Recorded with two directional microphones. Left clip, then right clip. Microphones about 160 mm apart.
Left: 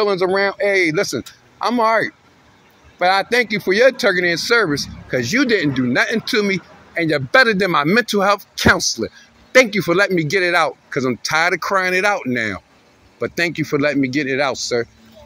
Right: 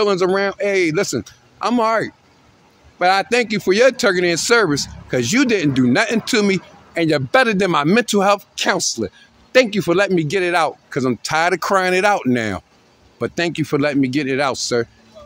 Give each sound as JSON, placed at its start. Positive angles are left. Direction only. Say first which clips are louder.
{"t": 0.0, "sound": "speech", "louder": "even", "side_deg": -50}
{"t": 8.7, "sound": "speech", "louder": "left 1 dB", "side_deg": -30}